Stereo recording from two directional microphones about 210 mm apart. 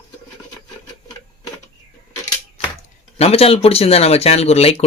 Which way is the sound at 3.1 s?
30° left (ahead or behind).